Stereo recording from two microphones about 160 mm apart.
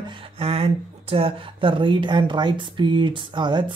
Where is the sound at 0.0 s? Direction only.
30° right (ahead or behind).